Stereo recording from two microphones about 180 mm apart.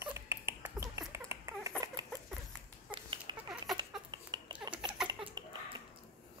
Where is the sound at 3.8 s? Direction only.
25° right (ahead or behind).